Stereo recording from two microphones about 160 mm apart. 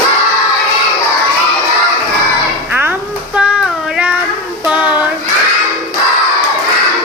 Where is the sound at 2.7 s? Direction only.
10° right (ahead or behind).